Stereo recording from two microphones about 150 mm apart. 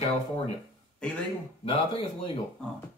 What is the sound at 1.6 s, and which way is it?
Speech, 35° left (ahead or behind).